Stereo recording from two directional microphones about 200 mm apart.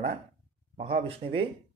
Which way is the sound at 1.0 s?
25° right (ahead or behind).